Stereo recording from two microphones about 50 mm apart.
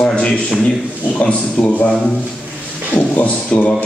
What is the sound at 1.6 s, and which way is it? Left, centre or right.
Speech, centre.